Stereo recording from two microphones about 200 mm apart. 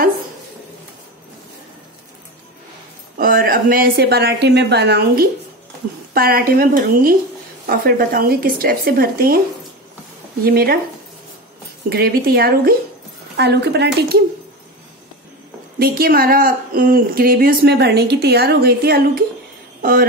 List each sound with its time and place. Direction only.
3.2 s speech: 45° right (ahead or behind)
10.4 s speech: 50° right (ahead or behind)
11.9 s speech: 50° right (ahead or behind)
15.8 s speech: 50° right (ahead or behind)